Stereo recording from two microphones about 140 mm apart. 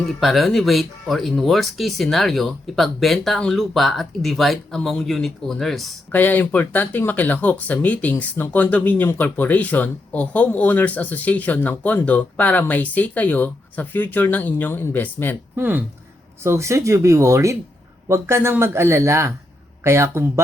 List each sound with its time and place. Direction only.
0.0 s speech: centre (ahead or behind)
6.1 s speech: 10° left (ahead or behind)
15.5 s speech: 15° right (ahead or behind)